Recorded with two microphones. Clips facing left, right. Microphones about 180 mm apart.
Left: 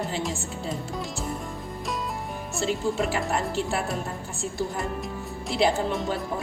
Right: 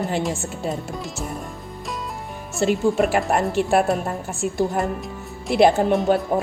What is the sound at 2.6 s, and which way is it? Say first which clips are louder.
Speech: right 7 dB; 60° right (ahead or behind).